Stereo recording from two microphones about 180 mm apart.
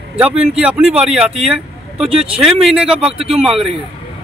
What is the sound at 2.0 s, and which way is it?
Speech, 30° right (ahead or behind).